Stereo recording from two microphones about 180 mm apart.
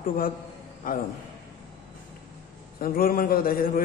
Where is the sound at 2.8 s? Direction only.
55° left (ahead or behind).